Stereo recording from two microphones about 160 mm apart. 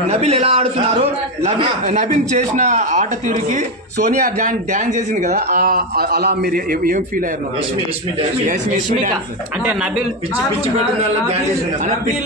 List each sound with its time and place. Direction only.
0.1 s a man's voice: 40° right (ahead or behind); by 7.0 s 65° right (ahead or behind)